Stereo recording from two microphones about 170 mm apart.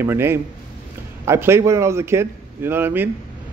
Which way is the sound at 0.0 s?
15° right (ahead or behind).